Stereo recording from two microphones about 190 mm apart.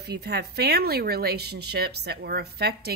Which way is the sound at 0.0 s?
60° right (ahead or behind).